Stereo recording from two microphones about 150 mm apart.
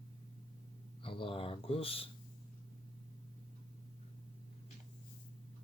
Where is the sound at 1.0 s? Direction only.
35° left (ahead or behind).